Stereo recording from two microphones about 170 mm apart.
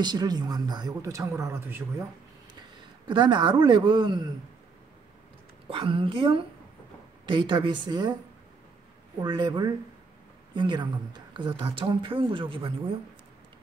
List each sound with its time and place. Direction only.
0.0 s speech: 25° right (ahead or behind)
3.1 s speech: 25° right (ahead or behind)
5.7 s a woman's voice: 30° right (ahead or behind)
9.2 s speech: 25° right (ahead or behind)